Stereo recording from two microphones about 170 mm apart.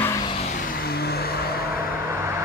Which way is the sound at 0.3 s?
40° left (ahead or behind).